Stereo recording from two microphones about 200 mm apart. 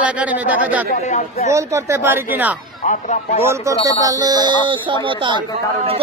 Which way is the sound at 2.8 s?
35° left (ahead or behind).